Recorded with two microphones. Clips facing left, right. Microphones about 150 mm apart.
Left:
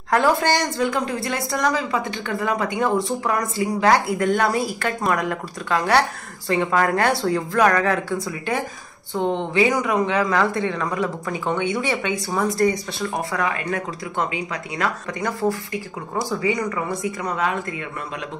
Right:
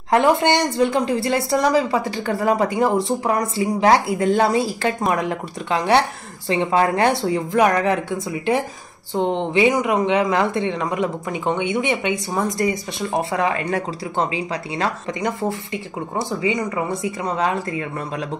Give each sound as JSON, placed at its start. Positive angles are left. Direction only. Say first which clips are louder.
{"t": 0.1, "sound": "a woman's voice", "louder": "right 3 dB", "side_deg": -20}